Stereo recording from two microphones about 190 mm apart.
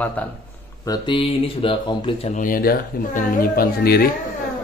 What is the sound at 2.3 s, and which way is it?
Speech, 45° left (ahead or behind).